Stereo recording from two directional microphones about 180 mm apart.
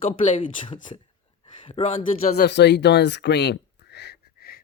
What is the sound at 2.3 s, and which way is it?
Speech, 65° left (ahead or behind).